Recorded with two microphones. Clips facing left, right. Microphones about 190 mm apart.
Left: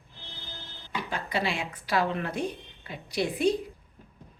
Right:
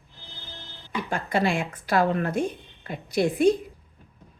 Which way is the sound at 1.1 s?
50° right (ahead or behind).